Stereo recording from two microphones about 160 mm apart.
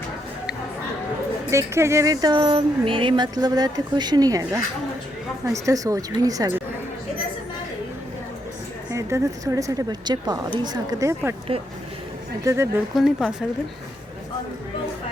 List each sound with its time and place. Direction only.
1.5 s speech: 15° right (ahead or behind)
8.9 s speech: 20° right (ahead or behind)
12.5 s speech: 20° right (ahead or behind)
13.0 s speech: centre (ahead or behind)